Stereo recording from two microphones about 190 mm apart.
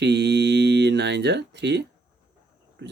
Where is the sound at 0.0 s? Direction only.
65° right (ahead or behind).